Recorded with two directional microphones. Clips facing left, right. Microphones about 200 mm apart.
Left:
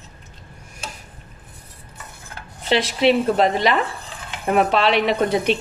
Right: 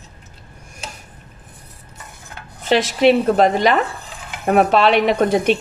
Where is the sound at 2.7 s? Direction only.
45° right (ahead or behind).